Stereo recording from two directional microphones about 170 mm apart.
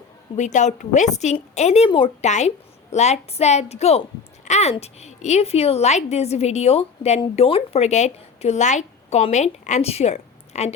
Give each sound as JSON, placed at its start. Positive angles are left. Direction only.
{"t": 0.3, "sound": "a woman's voice", "side_deg": 45}